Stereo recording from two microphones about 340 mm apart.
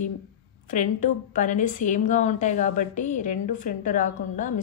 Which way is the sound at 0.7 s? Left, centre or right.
Left.